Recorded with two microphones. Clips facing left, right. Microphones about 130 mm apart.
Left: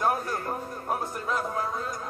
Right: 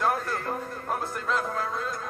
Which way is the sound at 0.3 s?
10° left (ahead or behind).